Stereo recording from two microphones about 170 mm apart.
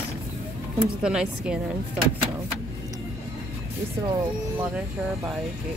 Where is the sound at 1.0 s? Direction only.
5° right (ahead or behind).